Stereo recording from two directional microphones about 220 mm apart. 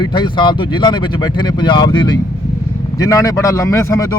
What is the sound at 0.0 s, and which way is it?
Speech, 20° left (ahead or behind).